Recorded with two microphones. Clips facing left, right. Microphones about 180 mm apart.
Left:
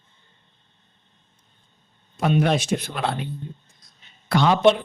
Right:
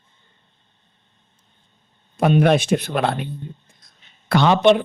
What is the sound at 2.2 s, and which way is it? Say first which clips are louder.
Speech: right 5 dB; 55° right (ahead or behind).